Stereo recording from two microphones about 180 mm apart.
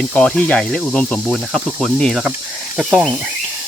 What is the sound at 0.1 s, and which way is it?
Speech, 5° left (ahead or behind).